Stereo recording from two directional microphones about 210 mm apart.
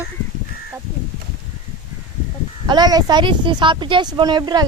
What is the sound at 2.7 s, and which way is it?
Speech, 20° right (ahead or behind).